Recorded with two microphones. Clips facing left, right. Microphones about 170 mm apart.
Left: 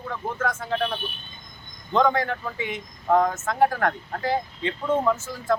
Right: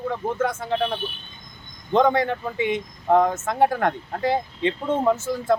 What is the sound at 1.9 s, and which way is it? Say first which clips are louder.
Speech: right 3 dB; 20° right (ahead or behind).